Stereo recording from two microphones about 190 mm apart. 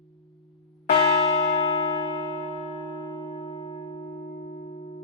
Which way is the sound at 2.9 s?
25° left (ahead or behind).